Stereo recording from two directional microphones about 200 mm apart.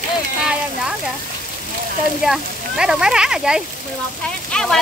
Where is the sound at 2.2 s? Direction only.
Centre (ahead or behind).